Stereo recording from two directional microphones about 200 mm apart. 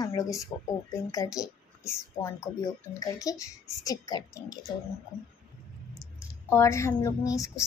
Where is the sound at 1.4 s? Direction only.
5° right (ahead or behind).